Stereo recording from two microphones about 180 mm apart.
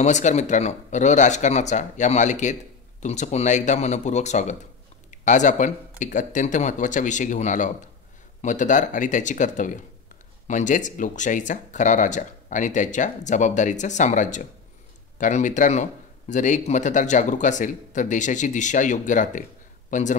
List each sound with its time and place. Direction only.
0.0 s speech: 40° left (ahead or behind)